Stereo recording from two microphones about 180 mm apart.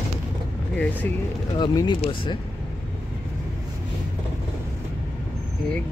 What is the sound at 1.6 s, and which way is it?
Speech, 25° left (ahead or behind).